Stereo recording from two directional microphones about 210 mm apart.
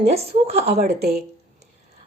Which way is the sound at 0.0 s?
30° right (ahead or behind).